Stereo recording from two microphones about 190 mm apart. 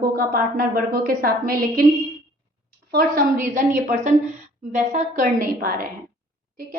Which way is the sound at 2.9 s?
50° right (ahead or behind).